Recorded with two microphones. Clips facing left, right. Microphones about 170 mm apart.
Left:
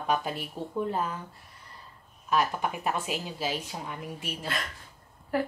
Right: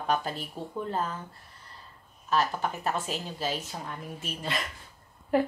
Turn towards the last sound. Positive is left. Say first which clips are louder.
# right 4 dB
turn(degrees=-20)  # may be behind; listen again after turning